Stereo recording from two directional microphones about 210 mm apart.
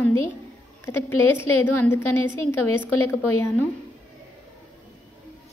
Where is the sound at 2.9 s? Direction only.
90° left.